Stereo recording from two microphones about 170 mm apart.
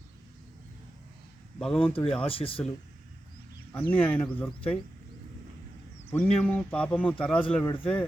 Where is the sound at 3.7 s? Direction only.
10° left (ahead or behind).